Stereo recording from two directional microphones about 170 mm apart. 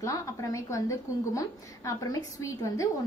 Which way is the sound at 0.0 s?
20° left (ahead or behind).